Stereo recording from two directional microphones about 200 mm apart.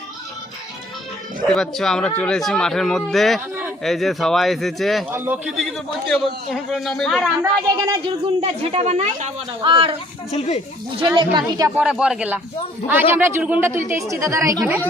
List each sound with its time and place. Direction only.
1.5 s a man's voice: centre (ahead or behind)
7.7 s speech: 20° right (ahead or behind)
10.3 s speech: 35° left (ahead or behind)
11.0 s speech: 20° right (ahead or behind)
11.8 s a man's voice: 5° right (ahead or behind)